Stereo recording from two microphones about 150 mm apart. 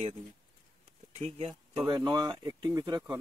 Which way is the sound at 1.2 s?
45° right (ahead or behind).